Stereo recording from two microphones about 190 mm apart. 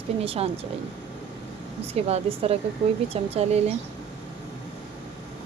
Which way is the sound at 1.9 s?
30° right (ahead or behind).